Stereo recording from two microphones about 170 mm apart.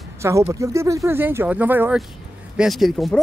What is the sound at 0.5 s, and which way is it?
Speech, 20° right (ahead or behind).